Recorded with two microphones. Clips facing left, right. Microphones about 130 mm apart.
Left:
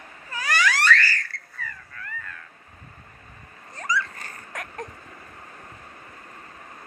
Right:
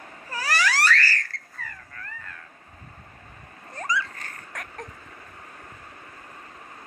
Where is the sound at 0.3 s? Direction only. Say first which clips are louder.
Left 1 dB; 35° right (ahead or behind).